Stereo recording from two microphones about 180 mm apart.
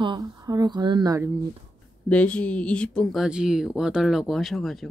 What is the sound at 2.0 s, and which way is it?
Speech, 5° left (ahead or behind).